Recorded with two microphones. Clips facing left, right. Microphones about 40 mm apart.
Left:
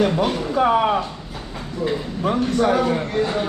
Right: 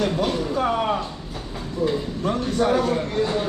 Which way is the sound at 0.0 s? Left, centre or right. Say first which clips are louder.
Left 3 dB; centre.